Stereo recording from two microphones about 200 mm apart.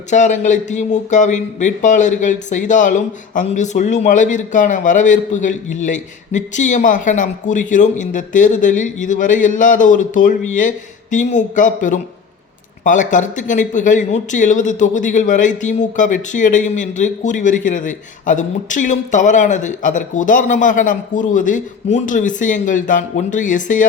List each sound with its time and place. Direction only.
0.1 s speech: 35° left (ahead or behind)